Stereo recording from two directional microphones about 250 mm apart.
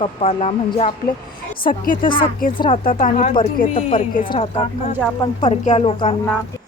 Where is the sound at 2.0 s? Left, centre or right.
Centre.